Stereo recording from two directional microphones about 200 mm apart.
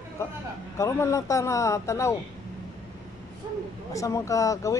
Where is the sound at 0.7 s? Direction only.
15° left (ahead or behind).